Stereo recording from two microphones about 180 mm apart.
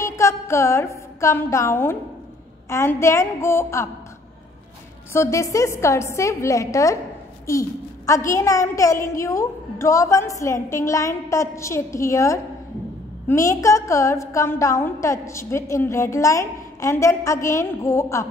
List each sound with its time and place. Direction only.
0.0 s a woman's voice: 15° left (ahead or behind)
5.1 s a woman's voice: 15° left (ahead or behind)
8.3 s a woman's voice: 15° left (ahead or behind)